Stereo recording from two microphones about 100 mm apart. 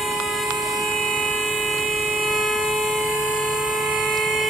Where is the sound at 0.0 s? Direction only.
Centre (ahead or behind).